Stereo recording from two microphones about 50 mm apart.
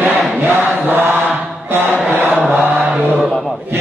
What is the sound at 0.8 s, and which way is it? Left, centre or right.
Chant, right.